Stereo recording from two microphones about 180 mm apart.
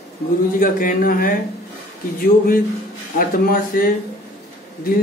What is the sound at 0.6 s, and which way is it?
Speech, 50° left (ahead or behind).